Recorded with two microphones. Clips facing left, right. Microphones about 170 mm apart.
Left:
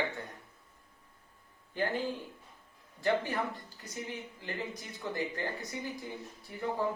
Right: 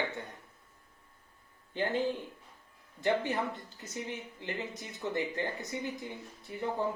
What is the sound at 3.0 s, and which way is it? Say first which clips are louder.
A woman's voice: right 1 dB; 20° right (ahead or behind).